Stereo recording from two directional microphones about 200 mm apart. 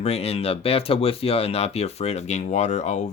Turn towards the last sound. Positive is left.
turn(degrees=35)  # may be behind; listen again after turning